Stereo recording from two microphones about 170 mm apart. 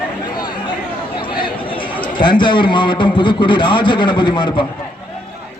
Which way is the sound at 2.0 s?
30° left (ahead or behind).